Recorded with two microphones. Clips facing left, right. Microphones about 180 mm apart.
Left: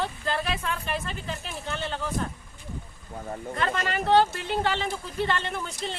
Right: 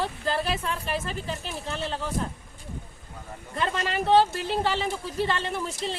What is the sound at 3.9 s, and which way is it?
A woman's voice, centre (ahead or behind).